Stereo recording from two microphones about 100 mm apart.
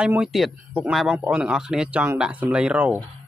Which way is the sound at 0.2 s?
5° right (ahead or behind).